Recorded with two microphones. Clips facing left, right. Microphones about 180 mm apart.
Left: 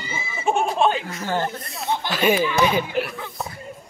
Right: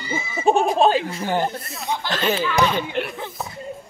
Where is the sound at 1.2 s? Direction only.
15° right (ahead or behind).